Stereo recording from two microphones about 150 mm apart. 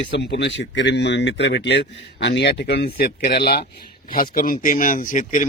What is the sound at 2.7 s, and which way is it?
Speech, 90° left.